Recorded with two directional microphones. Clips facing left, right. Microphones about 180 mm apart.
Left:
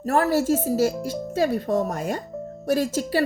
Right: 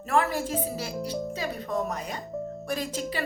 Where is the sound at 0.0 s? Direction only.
40° left (ahead or behind).